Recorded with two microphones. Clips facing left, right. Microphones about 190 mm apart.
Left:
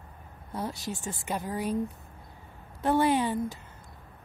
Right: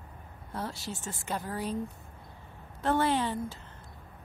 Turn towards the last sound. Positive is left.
turn(degrees=15)  # may be behind; listen again after turning